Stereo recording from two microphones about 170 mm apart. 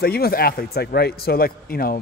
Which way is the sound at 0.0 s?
65° left (ahead or behind).